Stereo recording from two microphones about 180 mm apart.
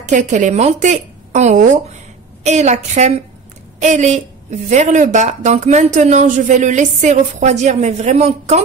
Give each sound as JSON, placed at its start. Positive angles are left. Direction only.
{"t": 0.0, "sound": "a woman's voice", "side_deg": -40}